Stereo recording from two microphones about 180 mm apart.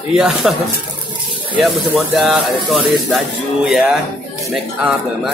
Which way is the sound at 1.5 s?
5° right (ahead or behind).